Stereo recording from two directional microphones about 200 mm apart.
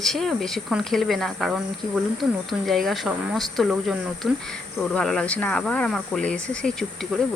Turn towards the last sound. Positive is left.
turn(degrees=0)  # may be behind; listen again after turning